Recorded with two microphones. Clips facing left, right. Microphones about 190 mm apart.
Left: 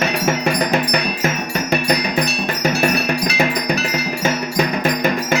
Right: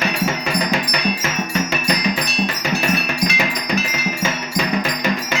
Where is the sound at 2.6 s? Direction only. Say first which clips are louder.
Left 7 dB; 40° left (ahead or behind).